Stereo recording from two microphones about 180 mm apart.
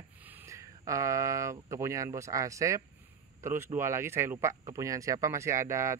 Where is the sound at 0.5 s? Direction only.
15° right (ahead or behind).